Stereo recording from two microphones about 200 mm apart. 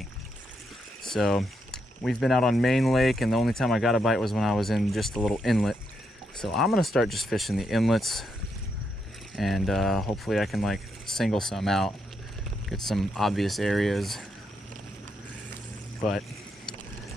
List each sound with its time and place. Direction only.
1.0 s speech: centre (ahead or behind)
9.3 s speech: centre (ahead or behind)
16.0 s speech: centre (ahead or behind)